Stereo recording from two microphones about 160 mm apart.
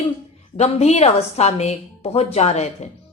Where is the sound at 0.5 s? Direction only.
40° left (ahead or behind).